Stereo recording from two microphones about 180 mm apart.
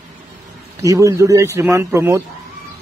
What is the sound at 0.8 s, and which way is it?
Speech, 15° right (ahead or behind).